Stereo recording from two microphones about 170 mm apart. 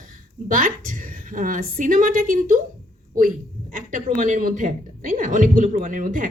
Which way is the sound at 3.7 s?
50° right (ahead or behind).